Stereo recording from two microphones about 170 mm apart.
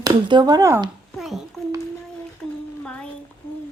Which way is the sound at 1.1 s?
Centre (ahead or behind).